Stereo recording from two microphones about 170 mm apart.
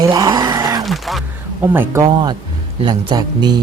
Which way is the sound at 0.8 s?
Centre (ahead or behind).